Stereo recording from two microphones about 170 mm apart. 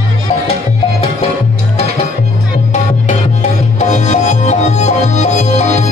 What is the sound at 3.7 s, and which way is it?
Music, 45° left (ahead or behind).